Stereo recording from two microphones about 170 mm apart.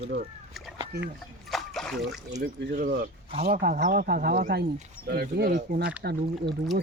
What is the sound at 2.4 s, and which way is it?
Speech, 60° right (ahead or behind).